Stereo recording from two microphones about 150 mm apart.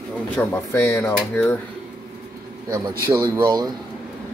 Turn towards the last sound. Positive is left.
turn(degrees=-25)  # may be behind; listen again after turning